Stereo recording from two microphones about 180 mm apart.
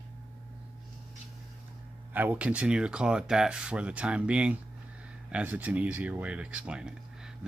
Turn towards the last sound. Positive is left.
turn(degrees=-5)  # may be behind; listen again after turning